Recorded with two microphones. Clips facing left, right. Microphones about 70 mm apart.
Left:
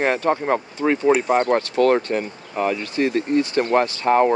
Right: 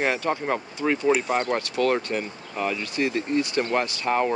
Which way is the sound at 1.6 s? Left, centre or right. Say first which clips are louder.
Left 6 dB; left.